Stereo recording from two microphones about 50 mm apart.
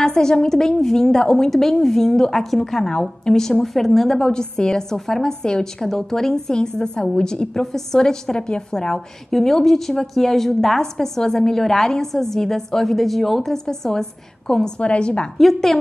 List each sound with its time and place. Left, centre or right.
0.0 s a woman's voice: centre
4.2 s a woman's voice: centre
14.8 s a woman's voice: left
15.3 s a woman's voice: centre